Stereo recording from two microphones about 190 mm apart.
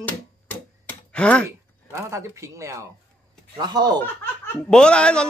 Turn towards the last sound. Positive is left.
turn(degrees=5)  # may be behind; listen again after turning